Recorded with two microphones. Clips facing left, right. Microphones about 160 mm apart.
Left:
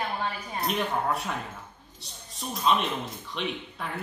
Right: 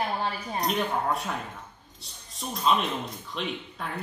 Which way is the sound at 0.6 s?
Centre (ahead or behind).